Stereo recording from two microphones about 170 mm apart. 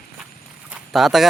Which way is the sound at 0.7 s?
5° right (ahead or behind).